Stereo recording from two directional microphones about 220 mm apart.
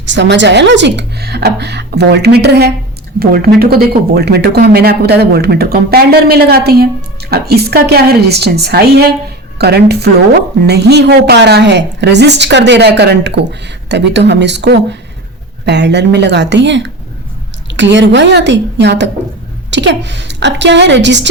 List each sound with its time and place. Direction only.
0.0 s speech: 55° right (ahead or behind)